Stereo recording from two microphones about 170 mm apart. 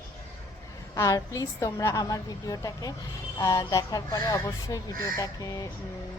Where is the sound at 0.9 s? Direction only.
20° left (ahead or behind).